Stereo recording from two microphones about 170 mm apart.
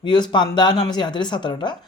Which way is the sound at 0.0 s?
25° left (ahead or behind).